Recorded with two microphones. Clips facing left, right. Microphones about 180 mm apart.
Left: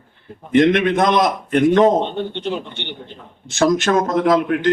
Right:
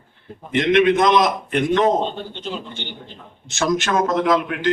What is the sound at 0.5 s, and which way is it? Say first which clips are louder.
A man's voice: left 2 dB; 50° left (ahead or behind).